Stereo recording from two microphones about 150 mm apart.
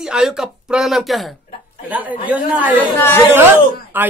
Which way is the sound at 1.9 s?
10° right (ahead or behind).